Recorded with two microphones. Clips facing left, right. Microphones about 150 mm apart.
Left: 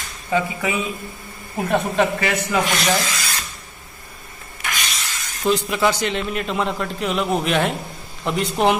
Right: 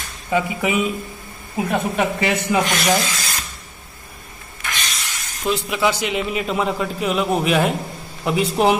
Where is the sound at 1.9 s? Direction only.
15° right (ahead or behind).